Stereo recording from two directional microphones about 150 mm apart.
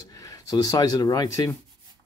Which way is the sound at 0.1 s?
20° left (ahead or behind).